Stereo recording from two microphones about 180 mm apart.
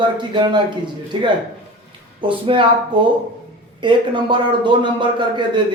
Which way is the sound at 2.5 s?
30° right (ahead or behind).